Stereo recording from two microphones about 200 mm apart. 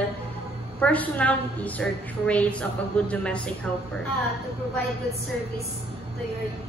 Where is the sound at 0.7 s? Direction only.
5° left (ahead or behind).